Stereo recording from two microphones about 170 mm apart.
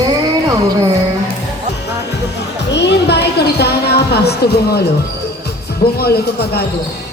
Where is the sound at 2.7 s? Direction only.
90° left; by 4.8 s 70° left (ahead or behind).